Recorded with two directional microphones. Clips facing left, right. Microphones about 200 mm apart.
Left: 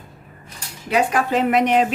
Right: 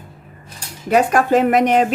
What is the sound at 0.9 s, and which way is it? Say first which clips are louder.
Speech: right 5 dB; 45° right (ahead or behind).